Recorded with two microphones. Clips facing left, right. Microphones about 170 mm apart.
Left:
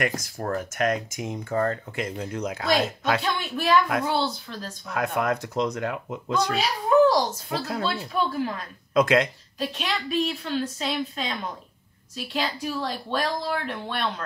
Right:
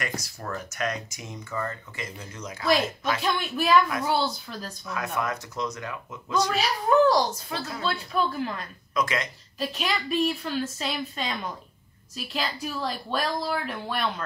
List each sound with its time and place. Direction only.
0.0 s speech: 50° left (ahead or behind)
3.2 s a woman's voice: centre (ahead or behind)
4.9 s speech: 60° left (ahead or behind)
6.5 s a woman's voice: centre (ahead or behind)
8.9 s speech: 60° left (ahead or behind)
9.6 s a woman's voice: 5° right (ahead or behind)